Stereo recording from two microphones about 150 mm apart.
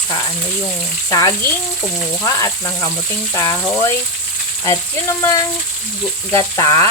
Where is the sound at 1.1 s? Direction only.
20° left (ahead or behind).